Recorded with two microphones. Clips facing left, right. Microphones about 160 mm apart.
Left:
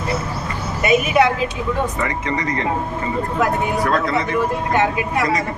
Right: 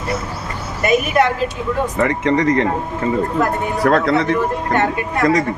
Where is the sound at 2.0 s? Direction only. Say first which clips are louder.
Right 6 dB; 70° right (ahead or behind).